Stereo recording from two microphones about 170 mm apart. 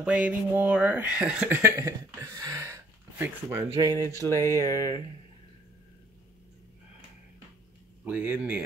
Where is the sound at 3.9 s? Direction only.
15° left (ahead or behind).